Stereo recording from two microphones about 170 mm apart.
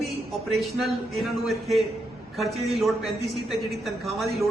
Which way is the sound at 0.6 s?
Centre (ahead or behind).